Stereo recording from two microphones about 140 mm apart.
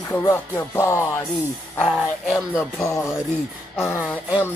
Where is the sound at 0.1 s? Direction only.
20° left (ahead or behind).